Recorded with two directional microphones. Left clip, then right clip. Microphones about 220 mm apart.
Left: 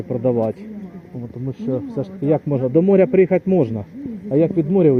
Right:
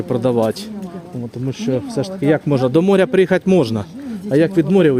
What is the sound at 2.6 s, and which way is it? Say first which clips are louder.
Speech: left 2 dB; 15° right (ahead or behind).